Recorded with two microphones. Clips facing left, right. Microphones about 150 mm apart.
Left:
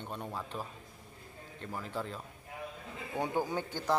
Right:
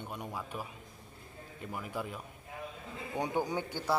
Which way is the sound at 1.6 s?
10° right (ahead or behind).